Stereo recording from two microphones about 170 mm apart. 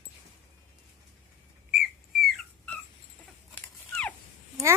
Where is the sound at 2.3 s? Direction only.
10° left (ahead or behind).